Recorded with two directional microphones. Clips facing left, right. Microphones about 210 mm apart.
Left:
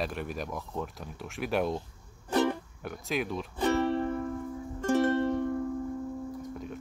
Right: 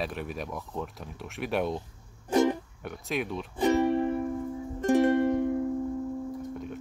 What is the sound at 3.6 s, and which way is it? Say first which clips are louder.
Music: right 3 dB; 15° right (ahead or behind).